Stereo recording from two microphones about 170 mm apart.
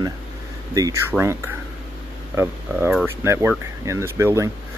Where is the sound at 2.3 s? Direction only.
15° right (ahead or behind).